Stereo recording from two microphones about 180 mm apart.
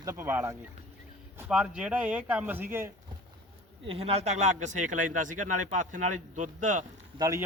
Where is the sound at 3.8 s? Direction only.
35° right (ahead or behind).